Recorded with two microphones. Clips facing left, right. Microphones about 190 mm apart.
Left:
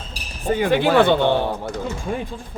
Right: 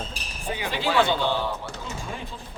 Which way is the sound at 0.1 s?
45° left (ahead or behind).